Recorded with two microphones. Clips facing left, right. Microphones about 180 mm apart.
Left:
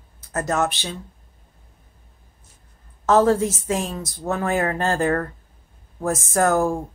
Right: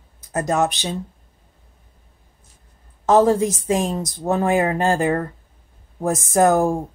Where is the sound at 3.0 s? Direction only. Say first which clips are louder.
Right 2 dB; 15° right (ahead or behind).